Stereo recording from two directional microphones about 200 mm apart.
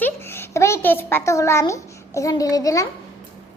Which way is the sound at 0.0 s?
10° left (ahead or behind).